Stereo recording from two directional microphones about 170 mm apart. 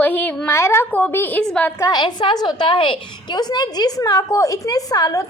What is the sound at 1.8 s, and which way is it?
A woman's voice, 25° left (ahead or behind).